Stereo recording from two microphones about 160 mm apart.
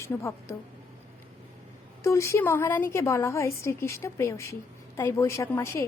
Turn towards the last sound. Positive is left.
turn(degrees=15)  # may be behind; listen again after turning